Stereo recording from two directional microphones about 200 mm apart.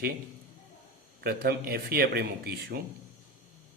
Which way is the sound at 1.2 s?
50° right (ahead or behind).